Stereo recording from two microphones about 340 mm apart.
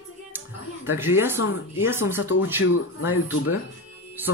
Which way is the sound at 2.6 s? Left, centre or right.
Left.